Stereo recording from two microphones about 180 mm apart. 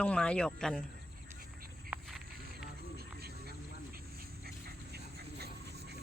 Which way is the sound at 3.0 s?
60° right (ahead or behind).